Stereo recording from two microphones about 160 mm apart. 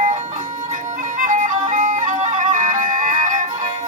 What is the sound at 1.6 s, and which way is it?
Music, 55° right (ahead or behind).